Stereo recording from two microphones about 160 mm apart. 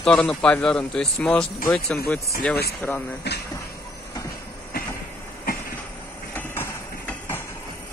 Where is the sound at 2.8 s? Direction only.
15° left (ahead or behind).